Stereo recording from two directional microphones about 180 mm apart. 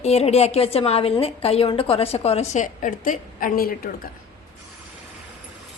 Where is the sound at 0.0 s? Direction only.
35° left (ahead or behind); by 3.7 s 50° left (ahead or behind).